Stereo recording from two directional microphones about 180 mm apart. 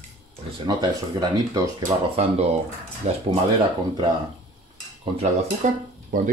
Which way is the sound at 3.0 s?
35° right (ahead or behind).